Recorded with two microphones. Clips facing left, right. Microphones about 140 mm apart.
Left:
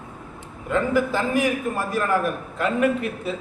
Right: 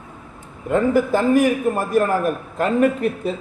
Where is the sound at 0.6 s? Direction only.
50° right (ahead or behind).